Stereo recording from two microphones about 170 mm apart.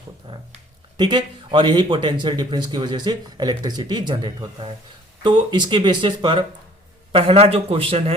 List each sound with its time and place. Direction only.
0.3 s speech: 30° right (ahead or behind)